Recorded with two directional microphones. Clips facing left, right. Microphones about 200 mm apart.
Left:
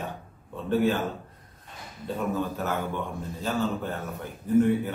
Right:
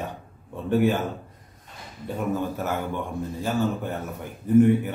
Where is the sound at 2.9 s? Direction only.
15° right (ahead or behind).